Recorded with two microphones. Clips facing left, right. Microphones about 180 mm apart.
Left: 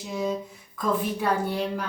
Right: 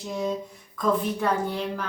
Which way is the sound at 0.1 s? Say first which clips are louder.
Even; 5° left (ahead or behind).